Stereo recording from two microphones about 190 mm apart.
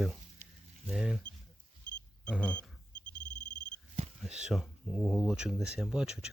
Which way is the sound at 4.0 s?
35° right (ahead or behind).